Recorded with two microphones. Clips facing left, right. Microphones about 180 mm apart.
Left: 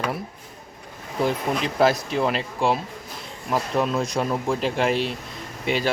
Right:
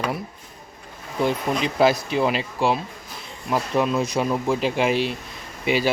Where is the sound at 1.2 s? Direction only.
Centre (ahead or behind).